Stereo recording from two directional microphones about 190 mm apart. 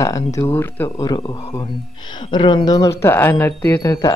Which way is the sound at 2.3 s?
25° left (ahead or behind).